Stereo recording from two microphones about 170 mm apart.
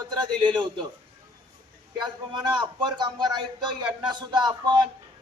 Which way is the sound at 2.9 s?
25° right (ahead or behind).